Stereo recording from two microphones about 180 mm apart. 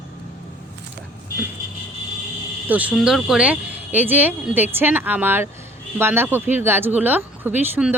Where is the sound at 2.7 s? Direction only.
10° right (ahead or behind).